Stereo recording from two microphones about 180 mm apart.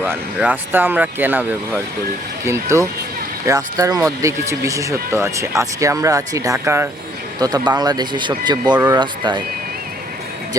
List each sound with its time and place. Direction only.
0.0 s speech: 10° right (ahead or behind); by 9.4 s 25° right (ahead or behind)